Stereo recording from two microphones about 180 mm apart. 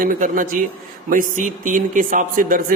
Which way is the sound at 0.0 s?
50° right (ahead or behind).